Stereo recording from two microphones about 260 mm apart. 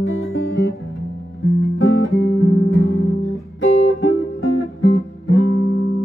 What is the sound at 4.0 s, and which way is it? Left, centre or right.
Music, left.